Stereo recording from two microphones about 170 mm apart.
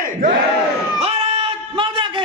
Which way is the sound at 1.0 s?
35° right (ahead or behind).